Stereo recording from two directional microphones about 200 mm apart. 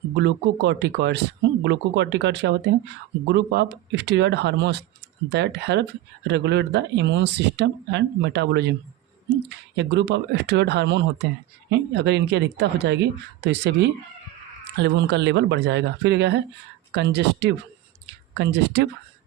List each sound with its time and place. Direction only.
0.2 s speech: 60° right (ahead or behind)
9.7 s speech: 60° right (ahead or behind)